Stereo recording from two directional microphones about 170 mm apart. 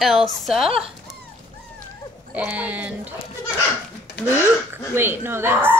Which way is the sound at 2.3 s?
10° right (ahead or behind).